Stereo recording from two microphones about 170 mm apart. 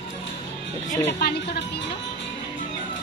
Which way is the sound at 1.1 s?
65° left (ahead or behind).